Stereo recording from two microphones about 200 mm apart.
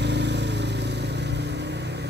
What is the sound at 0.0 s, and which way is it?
Vehicle, 60° right (ahead or behind).